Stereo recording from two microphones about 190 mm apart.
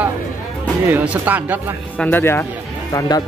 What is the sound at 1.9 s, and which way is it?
A man's voice, 10° left (ahead or behind).